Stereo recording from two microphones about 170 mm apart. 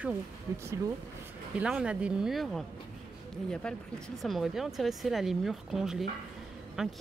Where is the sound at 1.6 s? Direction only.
5° right (ahead or behind).